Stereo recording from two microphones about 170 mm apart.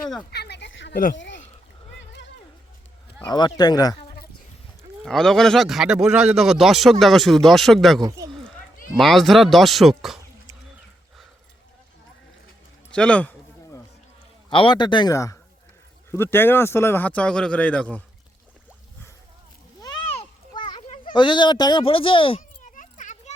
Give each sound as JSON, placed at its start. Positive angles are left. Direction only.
{"t": 0.3, "sound": "a sound", "side_deg": 75}
{"t": 3.2, "sound": "speech", "side_deg": 25}
{"t": 5.0, "sound": "a man's voice", "side_deg": 0}
{"t": 8.0, "sound": "speech", "side_deg": -20}
{"t": 9.0, "sound": "a man's voice", "side_deg": 0}
{"t": 12.9, "sound": "a sound", "side_deg": 5}
{"t": 14.5, "sound": "speech", "side_deg": 30}
{"t": 20.1, "sound": "children playing", "side_deg": 30}
{"t": 22.6, "sound": "a sound", "side_deg": 45}